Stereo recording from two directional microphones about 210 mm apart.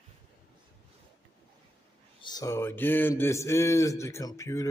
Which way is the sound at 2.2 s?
15° left (ahead or behind).